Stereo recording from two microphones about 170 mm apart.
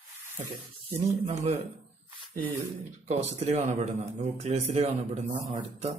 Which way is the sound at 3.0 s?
40° right (ahead or behind).